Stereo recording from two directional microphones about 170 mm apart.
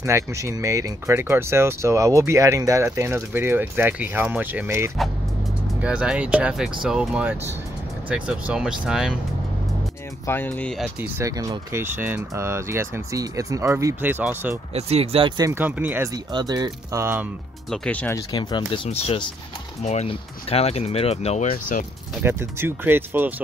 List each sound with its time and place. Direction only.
0.0 s speech: 15° right (ahead or behind)
10.2 s speech: 10° left (ahead or behind)
11.0 s speech: 15° right (ahead or behind)
14.7 s speech: 40° right (ahead or behind); by 17.3 s 15° right (ahead or behind)
17.6 s speech: 5° left (ahead or behind)
18.3 s speech: 25° left (ahead or behind)
18.9 s speech: 35° left (ahead or behind)
22.2 s speech: 15° right (ahead or behind)